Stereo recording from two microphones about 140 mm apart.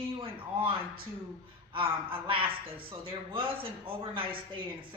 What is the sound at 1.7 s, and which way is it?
Speech, 40° right (ahead or behind).